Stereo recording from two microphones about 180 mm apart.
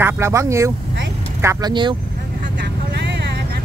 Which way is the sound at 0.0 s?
15° right (ahead or behind).